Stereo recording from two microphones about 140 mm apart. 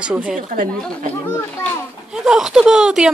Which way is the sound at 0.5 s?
65° right (ahead or behind).